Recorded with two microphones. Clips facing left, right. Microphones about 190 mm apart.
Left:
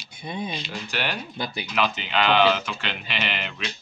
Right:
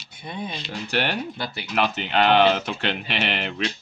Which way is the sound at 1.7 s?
60° right (ahead or behind).